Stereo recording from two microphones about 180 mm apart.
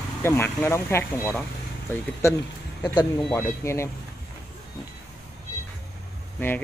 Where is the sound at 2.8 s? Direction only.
20° left (ahead or behind).